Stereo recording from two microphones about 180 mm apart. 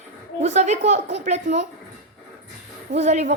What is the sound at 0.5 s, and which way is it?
A woman's voice, 40° right (ahead or behind).